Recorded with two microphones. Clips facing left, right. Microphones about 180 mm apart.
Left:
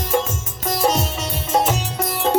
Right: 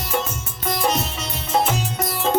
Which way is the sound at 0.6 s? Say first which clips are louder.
Left 3 dB; 45° left (ahead or behind).